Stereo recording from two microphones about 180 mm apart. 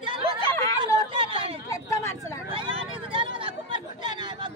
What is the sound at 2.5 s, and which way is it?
Chatter, 30° right (ahead or behind).